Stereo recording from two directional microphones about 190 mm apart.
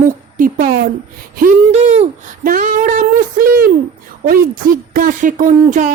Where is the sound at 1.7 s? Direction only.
35° right (ahead or behind).